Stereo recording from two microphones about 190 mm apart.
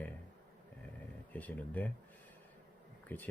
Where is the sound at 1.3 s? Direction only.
10° left (ahead or behind).